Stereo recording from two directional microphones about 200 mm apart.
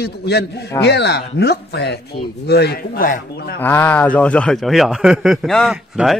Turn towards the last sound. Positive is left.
turn(degrees=0)  # may be behind; listen again after turning